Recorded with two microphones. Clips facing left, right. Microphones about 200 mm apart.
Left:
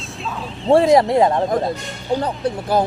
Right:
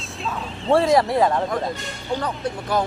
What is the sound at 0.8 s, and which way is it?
Speech, 20° left (ahead or behind).